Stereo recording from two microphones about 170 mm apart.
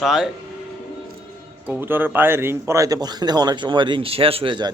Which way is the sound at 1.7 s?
10° right (ahead or behind).